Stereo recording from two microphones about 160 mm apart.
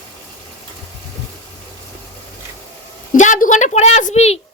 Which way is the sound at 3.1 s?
50° left (ahead or behind).